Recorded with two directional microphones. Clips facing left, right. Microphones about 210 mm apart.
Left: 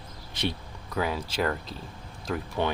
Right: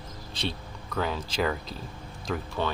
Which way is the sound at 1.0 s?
5° left (ahead or behind).